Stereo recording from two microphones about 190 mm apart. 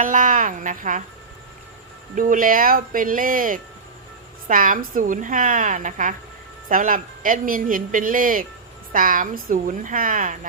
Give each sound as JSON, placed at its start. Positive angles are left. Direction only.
{"t": 0.0, "sound": "a woman's voice", "side_deg": -45}
{"t": 2.1, "sound": "a woman's voice", "side_deg": -45}